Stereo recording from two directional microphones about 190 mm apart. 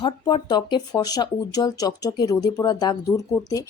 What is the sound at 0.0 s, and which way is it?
Speech, 25° left (ahead or behind).